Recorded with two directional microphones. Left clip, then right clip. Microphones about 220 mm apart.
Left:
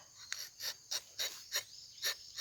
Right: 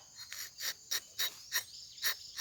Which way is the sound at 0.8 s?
10° right (ahead or behind).